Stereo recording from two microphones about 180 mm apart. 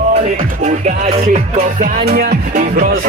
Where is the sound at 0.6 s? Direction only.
40° right (ahead or behind).